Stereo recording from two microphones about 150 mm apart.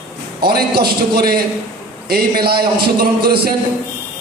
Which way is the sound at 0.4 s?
90° right.